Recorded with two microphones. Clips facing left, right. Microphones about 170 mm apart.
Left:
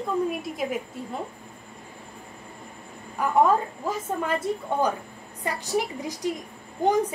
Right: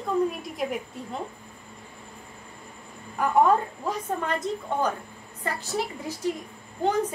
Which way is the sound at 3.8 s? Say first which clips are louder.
Left 1 dB; 10° left (ahead or behind).